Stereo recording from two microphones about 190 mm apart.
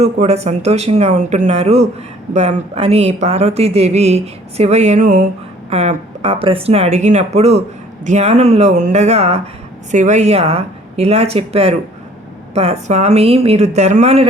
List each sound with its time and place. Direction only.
0.0 s speech: 35° right (ahead or behind)